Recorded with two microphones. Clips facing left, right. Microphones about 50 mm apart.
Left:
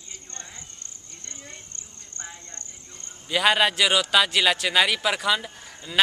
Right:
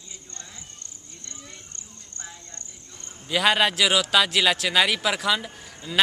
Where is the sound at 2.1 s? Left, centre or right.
Left.